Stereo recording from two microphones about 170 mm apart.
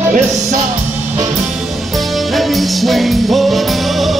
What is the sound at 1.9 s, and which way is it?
Music, centre (ahead or behind).